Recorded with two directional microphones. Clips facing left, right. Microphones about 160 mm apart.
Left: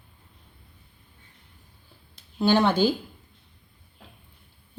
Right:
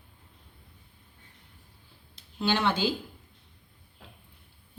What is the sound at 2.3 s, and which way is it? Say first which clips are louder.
Speech: left 7 dB; 40° left (ahead or behind).